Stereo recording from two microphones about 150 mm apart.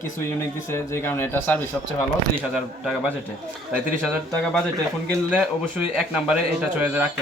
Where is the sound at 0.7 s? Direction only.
15° left (ahead or behind).